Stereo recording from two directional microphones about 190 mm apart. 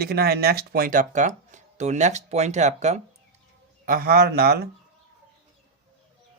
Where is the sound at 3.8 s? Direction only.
50° right (ahead or behind).